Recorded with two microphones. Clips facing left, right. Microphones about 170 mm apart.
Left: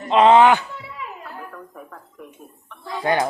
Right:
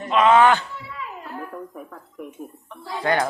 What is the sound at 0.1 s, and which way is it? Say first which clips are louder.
Speech: left 3 dB; 25° left (ahead or behind).